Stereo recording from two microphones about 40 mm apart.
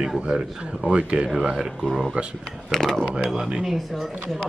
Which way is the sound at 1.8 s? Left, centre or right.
Centre.